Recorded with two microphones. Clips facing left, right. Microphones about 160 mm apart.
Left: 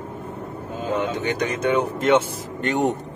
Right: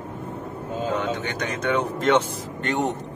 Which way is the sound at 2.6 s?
15° left (ahead or behind).